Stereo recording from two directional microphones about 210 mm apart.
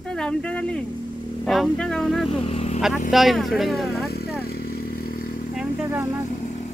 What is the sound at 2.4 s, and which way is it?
Speech, 30° left (ahead or behind).